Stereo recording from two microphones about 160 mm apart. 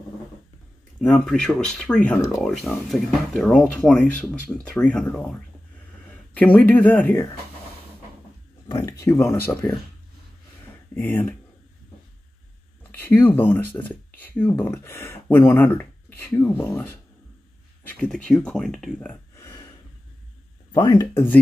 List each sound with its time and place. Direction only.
1.0 s speech: 5° left (ahead or behind)
2.5 s speech: centre (ahead or behind)
6.3 s speech: 10° left (ahead or behind)
8.6 s speech: 20° left (ahead or behind)
11.0 s speech: 10° left (ahead or behind)
13.0 s speech: 15° left (ahead or behind)
20.7 s speech: 25° left (ahead or behind)